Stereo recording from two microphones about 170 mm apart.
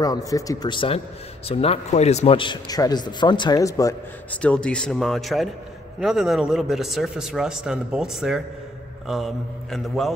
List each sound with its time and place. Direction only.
0.0 s a man's voice: 20° left (ahead or behind)
4.4 s a man's voice: 5° left (ahead or behind)